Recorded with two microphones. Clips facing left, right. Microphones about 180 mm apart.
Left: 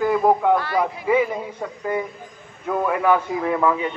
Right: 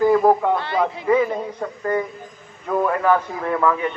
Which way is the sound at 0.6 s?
25° right (ahead or behind).